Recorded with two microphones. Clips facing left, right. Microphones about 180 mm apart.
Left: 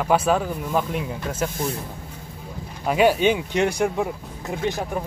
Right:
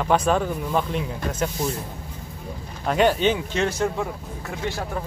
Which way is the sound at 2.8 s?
10° left (ahead or behind).